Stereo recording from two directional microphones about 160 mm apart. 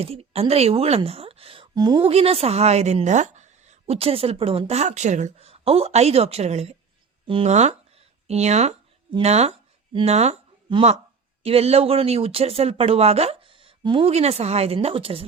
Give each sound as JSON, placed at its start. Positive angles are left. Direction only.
{"t": 0.0, "sound": "speech", "side_deg": -40}
{"t": 2.0, "sound": "a woman's voice", "side_deg": -40}